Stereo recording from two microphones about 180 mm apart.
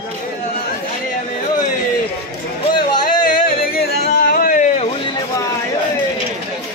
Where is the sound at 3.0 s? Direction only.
55° left (ahead or behind).